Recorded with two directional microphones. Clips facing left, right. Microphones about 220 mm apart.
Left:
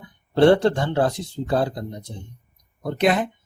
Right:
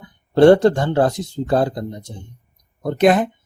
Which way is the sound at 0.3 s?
45° right (ahead or behind).